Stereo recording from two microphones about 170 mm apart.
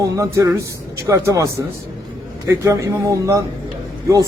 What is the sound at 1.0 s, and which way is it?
Speech, 20° right (ahead or behind).